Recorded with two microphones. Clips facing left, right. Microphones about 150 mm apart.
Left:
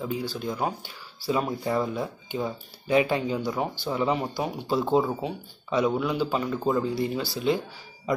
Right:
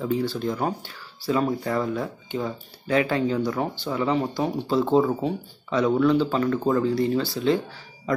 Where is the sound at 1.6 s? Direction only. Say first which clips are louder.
Right 1 dB; 15° left (ahead or behind).